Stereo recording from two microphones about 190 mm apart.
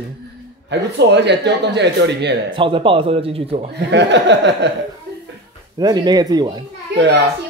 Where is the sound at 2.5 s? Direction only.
25° right (ahead or behind).